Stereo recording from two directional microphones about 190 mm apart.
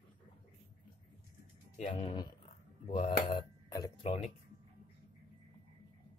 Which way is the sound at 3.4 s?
20° left (ahead or behind).